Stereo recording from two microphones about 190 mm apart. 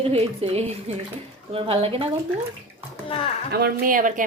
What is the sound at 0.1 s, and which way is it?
A woman's voice, 30° right (ahead or behind).